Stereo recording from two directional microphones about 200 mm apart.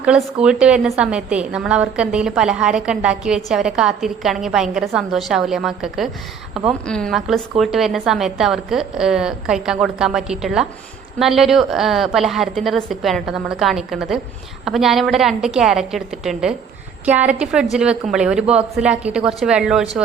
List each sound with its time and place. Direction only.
0.0 s a woman's voice: 5° right (ahead or behind)